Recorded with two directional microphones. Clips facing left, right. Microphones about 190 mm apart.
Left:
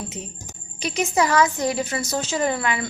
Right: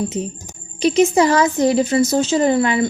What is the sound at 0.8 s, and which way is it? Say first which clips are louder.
A woman's voice: right 9 dB; 25° right (ahead or behind).